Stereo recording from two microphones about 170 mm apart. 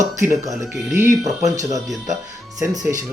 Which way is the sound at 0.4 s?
20° right (ahead or behind).